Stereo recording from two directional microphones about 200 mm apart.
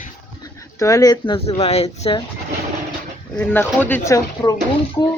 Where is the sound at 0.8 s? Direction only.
15° left (ahead or behind).